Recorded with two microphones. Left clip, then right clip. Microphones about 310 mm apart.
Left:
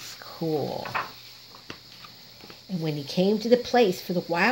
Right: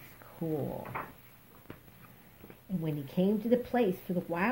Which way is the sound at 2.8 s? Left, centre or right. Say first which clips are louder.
Left 7 dB; left.